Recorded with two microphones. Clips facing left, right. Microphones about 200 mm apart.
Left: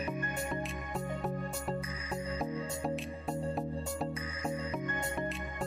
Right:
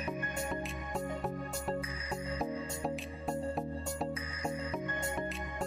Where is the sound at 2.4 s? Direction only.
Centre (ahead or behind).